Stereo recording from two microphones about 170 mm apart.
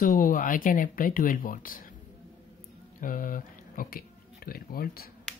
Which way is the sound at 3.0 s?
55° left (ahead or behind).